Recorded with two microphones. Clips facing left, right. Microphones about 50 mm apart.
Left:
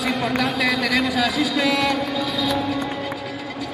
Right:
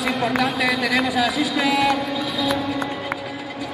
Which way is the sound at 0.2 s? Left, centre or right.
Centre.